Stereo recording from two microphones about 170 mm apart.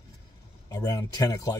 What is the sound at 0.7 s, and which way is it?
Speech, 20° left (ahead or behind).